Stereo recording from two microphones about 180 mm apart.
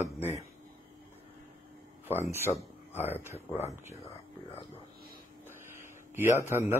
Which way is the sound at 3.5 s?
40° left (ahead or behind).